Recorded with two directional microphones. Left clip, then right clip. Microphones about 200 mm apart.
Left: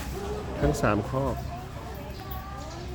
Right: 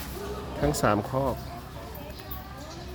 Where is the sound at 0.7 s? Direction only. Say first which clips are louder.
Right 3 dB; 25° right (ahead or behind).